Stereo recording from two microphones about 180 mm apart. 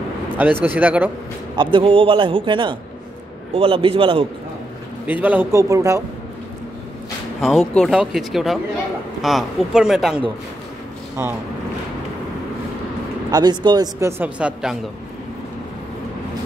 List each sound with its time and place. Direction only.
0.4 s speech: 10° right (ahead or behind)
1.6 s a man's voice: 30° right (ahead or behind)
5.0 s speech: 10° right (ahead or behind)
7.3 s speech: centre (ahead or behind)
13.3 s speech: 25° right (ahead or behind); by 14.8 s 5° right (ahead or behind)